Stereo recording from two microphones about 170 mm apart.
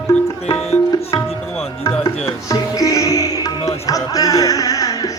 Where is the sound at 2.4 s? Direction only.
20° left (ahead or behind).